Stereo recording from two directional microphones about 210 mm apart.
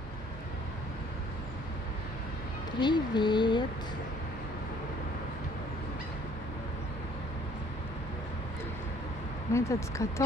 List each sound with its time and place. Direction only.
2.8 s speech: 20° left (ahead or behind)
9.5 s speech: 15° left (ahead or behind)